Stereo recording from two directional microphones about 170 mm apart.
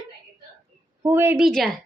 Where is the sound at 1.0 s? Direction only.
15° right (ahead or behind).